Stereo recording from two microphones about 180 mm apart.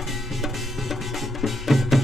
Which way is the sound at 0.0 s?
Centre (ahead or behind).